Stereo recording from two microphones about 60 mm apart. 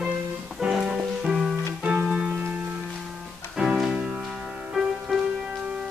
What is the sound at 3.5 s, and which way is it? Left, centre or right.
Music, centre.